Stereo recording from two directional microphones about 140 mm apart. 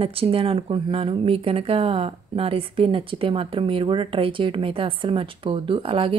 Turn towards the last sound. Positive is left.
turn(degrees=-40)  # may be behind; listen again after turning